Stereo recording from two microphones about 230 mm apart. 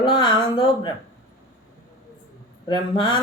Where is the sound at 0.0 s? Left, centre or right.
Left.